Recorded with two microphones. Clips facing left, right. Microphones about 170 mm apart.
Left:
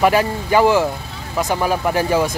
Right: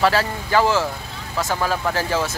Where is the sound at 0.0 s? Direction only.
15° left (ahead or behind).